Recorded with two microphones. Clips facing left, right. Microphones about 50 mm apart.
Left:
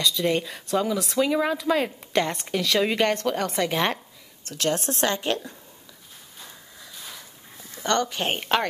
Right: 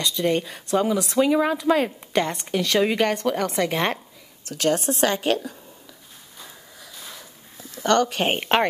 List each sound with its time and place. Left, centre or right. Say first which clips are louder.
0.0 s a woman's voice: right 1 dB; centre
4.6 s a woman's voice: right 4 dB; right
6.8 s a sound: right 1 dB; centre
7.8 s speech: right 4 dB; right